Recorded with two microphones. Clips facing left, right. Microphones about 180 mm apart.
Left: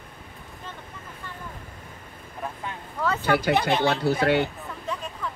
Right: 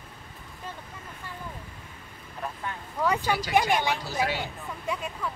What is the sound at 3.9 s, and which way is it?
Speech, 60° left (ahead or behind).